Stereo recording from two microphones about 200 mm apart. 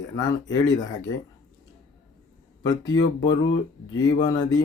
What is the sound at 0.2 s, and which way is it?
Speech, 20° left (ahead or behind).